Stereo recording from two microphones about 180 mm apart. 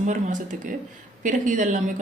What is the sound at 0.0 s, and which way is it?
Speech, 45° right (ahead or behind).